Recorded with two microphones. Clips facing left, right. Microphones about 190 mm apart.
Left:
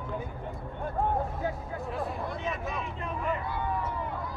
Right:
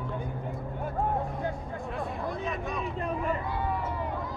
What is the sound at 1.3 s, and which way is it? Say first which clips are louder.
Music: even; 5° left (ahead or behind).